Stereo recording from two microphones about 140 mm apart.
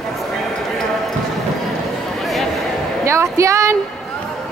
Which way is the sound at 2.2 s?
Centre (ahead or behind).